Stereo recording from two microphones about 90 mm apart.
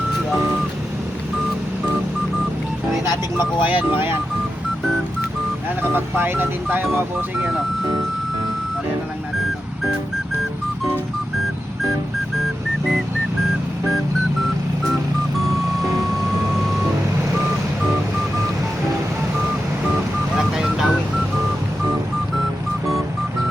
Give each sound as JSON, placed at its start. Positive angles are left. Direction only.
{"t": 3.3, "sound": "speech", "side_deg": -20}
{"t": 5.9, "sound": "speech", "side_deg": -25}
{"t": 20.3, "sound": "vehicle", "side_deg": -5}